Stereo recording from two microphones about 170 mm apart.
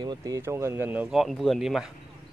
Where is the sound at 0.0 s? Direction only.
25° right (ahead or behind).